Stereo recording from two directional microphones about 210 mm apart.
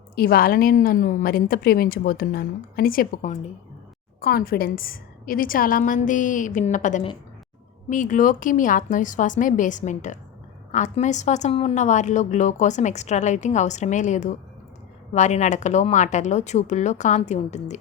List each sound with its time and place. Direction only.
0.2 s a woman's voice: 45° left (ahead or behind)